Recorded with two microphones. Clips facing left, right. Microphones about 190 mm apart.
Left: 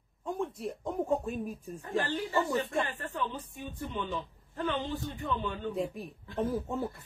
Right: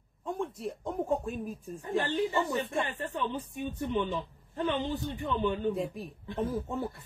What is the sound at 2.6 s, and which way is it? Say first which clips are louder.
Speech: even; centre (ahead or behind).